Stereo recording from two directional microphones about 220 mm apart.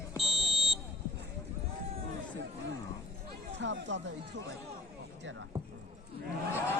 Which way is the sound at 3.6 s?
55° right (ahead or behind).